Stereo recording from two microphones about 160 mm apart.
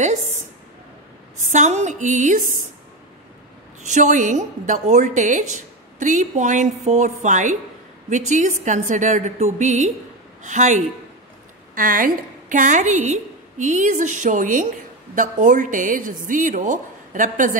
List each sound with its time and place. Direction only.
0.0 s a sound: 45° right (ahead or behind)
1.5 s a woman's voice: 45° right (ahead or behind)
3.8 s a woman's voice: 50° right (ahead or behind)